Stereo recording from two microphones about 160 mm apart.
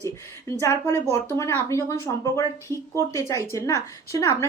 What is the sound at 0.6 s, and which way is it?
Speech, 15° left (ahead or behind).